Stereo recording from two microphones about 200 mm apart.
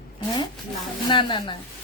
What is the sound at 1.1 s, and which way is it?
Speech, 25° left (ahead or behind).